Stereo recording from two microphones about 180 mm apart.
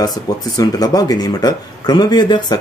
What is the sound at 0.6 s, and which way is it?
Speech, 20° left (ahead or behind).